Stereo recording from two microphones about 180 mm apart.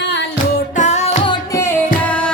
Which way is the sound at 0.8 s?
40° left (ahead or behind).